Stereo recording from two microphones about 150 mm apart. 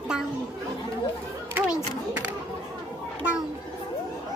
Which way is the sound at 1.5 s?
10° right (ahead or behind).